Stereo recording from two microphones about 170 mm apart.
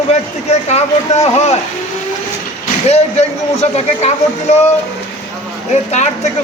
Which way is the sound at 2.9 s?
40° left (ahead or behind).